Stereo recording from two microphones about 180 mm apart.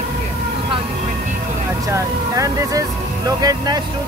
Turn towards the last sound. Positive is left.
turn(degrees=-20)  # may be behind; listen again after turning